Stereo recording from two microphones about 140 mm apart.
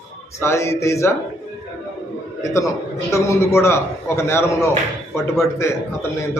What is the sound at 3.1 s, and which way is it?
A man's voice, 20° left (ahead or behind).